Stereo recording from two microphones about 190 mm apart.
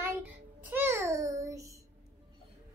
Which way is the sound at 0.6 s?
10° right (ahead or behind).